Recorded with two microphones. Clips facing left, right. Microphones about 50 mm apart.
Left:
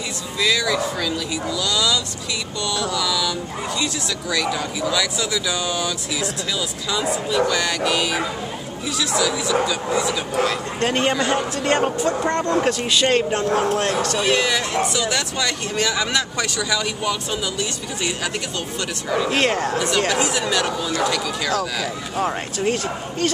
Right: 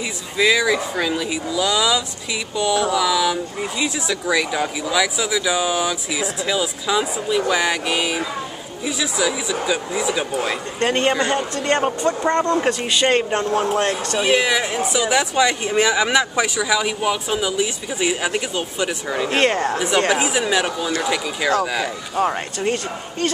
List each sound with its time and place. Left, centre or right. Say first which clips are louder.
0.4 s speech: right 3 dB; centre
19.4 s speech: right 1 dB; centre